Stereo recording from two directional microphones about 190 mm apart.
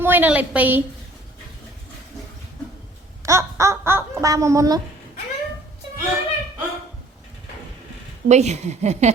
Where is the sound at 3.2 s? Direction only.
15° right (ahead or behind).